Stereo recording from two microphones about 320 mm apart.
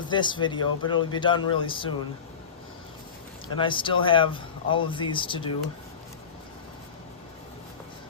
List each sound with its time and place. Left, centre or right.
0.1 s speech: centre
3.6 s speech: centre